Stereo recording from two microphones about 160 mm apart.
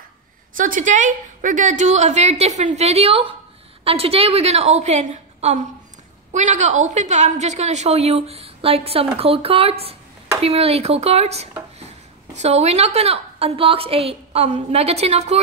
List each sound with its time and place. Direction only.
0.6 s a woman's voice: 55° right (ahead or behind)